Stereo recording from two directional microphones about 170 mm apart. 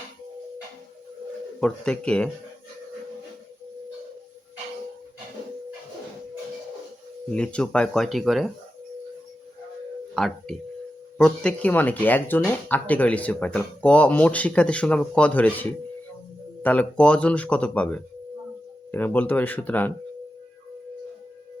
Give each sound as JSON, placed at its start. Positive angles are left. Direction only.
{"t": 1.6, "sound": "speech", "side_deg": 5}
{"t": 7.3, "sound": "speech", "side_deg": 5}
{"t": 10.2, "sound": "speech", "side_deg": 0}
{"t": 16.6, "sound": "speech", "side_deg": 10}